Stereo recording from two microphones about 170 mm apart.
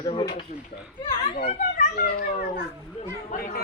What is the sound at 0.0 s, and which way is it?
Speech, 30° left (ahead or behind).